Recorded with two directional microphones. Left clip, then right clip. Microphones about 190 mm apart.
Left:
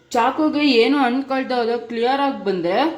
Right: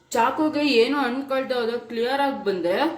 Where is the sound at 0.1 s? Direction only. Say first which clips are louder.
Left 3 dB; 35° left (ahead or behind).